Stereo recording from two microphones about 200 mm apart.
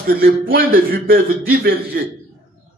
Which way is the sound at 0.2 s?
45° right (ahead or behind).